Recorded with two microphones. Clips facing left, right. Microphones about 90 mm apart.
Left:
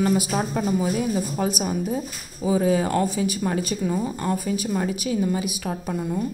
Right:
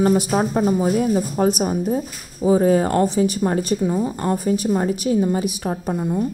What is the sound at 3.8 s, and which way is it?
Speech, 25° right (ahead or behind).